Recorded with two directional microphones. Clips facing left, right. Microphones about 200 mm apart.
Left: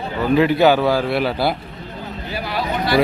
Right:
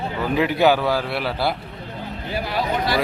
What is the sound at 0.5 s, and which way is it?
A man's voice, 10° right (ahead or behind).